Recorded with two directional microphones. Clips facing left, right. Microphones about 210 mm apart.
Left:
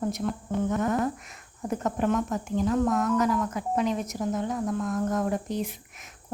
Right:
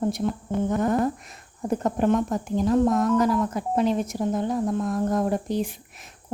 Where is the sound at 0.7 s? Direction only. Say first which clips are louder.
Right 4 dB; 35° right (ahead or behind).